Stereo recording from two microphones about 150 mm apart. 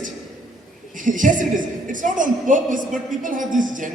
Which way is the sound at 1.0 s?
60° right (ahead or behind).